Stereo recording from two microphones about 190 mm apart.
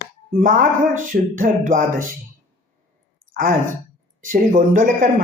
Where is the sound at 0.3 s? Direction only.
45° right (ahead or behind).